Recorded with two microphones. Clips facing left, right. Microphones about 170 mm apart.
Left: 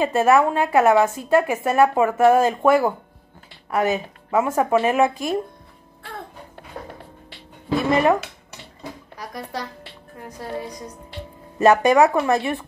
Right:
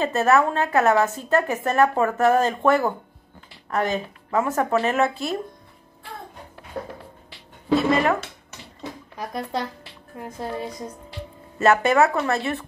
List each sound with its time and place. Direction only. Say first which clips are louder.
0.0 s a woman's voice: left 2 dB; 10° left (ahead or behind)
7.9 s a woman's voice: left 7 dB; 20° left (ahead or behind)
10.2 s a woman's voice: right 1 dB; 25° right (ahead or behind)
11.6 s a woman's voice: left 3 dB; 15° left (ahead or behind)